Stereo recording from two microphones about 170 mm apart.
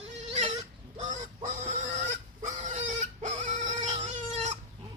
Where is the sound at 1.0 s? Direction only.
45° right (ahead or behind).